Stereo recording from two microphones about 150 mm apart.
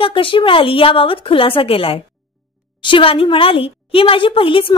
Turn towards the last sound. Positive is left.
turn(degrees=35)  # may be behind; listen again after turning